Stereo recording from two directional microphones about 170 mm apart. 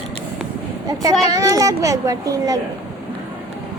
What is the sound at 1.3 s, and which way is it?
A child's voice, 20° right (ahead or behind).